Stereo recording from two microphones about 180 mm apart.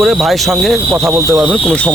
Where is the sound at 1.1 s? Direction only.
15° right (ahead or behind).